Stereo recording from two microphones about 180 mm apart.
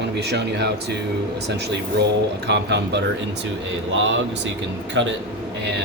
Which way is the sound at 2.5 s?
70° right (ahead or behind).